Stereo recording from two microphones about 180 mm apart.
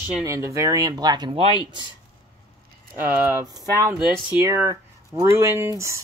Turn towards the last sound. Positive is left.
turn(degrees=-15)  # may be behind; listen again after turning